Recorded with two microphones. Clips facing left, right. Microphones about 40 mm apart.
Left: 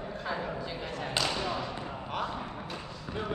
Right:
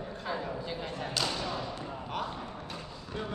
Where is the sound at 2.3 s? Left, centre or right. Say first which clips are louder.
Left 3 dB; centre.